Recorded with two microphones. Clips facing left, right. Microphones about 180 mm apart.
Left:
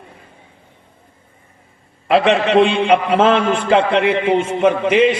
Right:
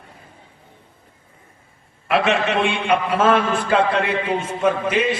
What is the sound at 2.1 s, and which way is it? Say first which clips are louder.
A man's voice: left 5 dB; 30° left (ahead or behind).